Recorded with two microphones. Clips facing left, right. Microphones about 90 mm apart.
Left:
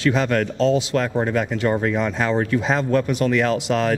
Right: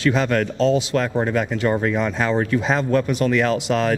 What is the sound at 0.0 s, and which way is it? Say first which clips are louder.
A man's voice: even; 20° right (ahead or behind).